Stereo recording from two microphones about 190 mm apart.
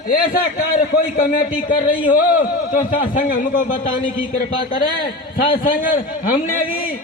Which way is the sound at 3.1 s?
45° left (ahead or behind).